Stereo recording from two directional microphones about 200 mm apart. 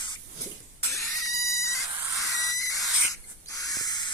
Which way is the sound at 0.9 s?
15° left (ahead or behind).